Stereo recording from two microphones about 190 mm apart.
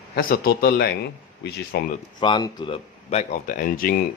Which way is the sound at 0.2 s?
50° left (ahead or behind).